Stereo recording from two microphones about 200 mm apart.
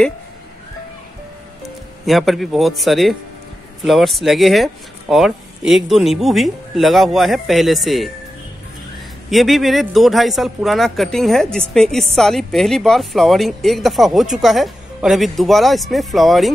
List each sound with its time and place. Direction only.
2.0 s speech: centre (ahead or behind)
9.3 s speech: centre (ahead or behind)